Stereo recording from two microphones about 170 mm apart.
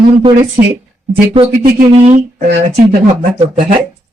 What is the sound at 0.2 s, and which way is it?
Speech, 30° right (ahead or behind).